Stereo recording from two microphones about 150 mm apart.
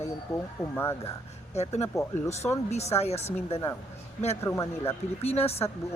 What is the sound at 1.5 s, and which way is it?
Speech, 45° left (ahead or behind).